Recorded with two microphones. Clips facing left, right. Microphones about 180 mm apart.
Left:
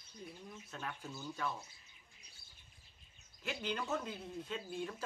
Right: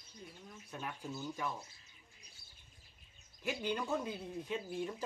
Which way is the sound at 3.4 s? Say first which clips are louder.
Right 3 dB; 10° right (ahead or behind).